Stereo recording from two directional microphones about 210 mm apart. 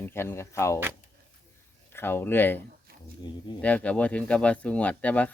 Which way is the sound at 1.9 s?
10° left (ahead or behind).